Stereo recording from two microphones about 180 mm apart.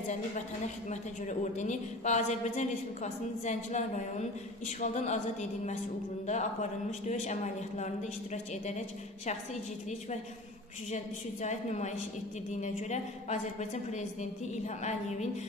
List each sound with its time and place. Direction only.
0.8 s a woman's voice: 40° left (ahead or behind)
11.4 s a woman's voice: 40° left (ahead or behind)